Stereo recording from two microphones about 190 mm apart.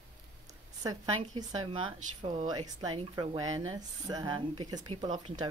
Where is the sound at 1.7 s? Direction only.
25° right (ahead or behind).